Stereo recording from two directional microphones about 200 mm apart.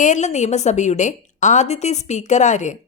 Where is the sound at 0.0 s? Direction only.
35° left (ahead or behind).